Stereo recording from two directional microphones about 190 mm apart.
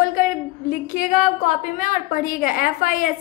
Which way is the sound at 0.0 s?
45° left (ahead or behind).